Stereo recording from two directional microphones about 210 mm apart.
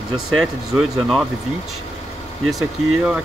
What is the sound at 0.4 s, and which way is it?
Speech, centre (ahead or behind).